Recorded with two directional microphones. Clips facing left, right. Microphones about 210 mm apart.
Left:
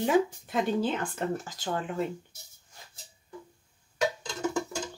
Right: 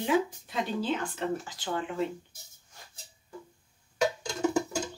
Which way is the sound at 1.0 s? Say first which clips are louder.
Left 1 dB; 45° left (ahead or behind).